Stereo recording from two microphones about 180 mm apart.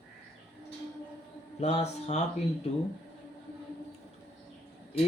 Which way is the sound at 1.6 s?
35° left (ahead or behind).